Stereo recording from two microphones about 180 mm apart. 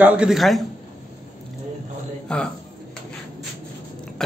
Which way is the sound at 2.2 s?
5° left (ahead or behind).